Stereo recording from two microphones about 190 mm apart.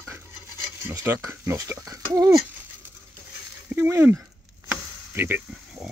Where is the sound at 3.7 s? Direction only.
10° right (ahead or behind).